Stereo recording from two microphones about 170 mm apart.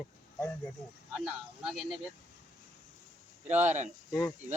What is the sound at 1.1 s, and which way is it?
Speech, 5° right (ahead or behind).